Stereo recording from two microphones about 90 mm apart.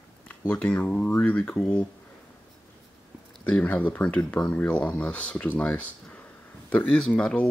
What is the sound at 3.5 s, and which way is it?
Speech, 15° left (ahead or behind).